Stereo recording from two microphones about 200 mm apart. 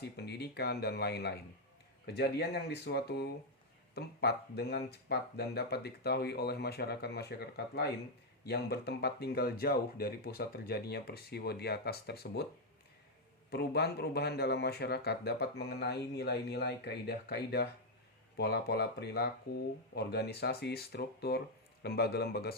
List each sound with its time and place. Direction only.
0.0 s speech: 55° left (ahead or behind)
13.5 s speech: 55° left (ahead or behind)